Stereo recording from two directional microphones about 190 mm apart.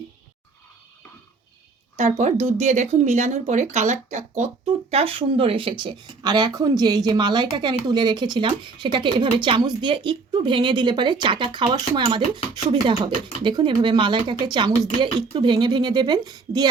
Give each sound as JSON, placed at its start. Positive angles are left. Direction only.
{"t": 2.0, "sound": "speech", "side_deg": -35}